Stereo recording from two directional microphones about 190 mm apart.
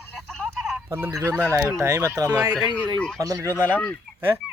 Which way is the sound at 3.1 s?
20° right (ahead or behind).